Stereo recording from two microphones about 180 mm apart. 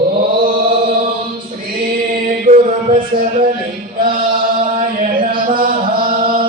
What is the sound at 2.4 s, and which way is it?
Music, 50° right (ahead or behind).